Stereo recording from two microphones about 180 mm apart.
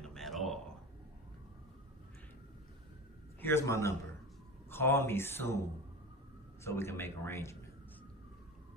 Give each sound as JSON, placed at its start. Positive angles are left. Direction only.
{"t": 0.0, "sound": "a sound", "side_deg": 0}
{"t": 3.3, "sound": "a man's voice", "side_deg": 15}
{"t": 6.6, "sound": "speech", "side_deg": 15}